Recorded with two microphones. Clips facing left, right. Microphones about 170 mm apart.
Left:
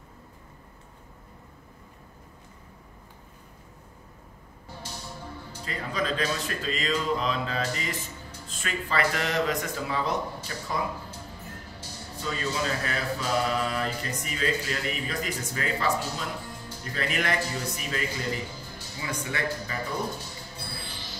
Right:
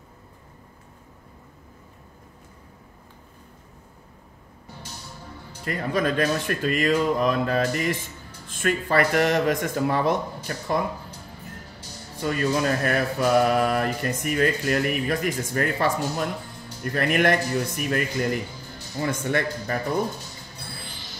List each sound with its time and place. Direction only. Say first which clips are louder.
5.7 s speech: right 6 dB; 55° right (ahead or behind)
12.2 s speech: right 7 dB; 55° right (ahead or behind)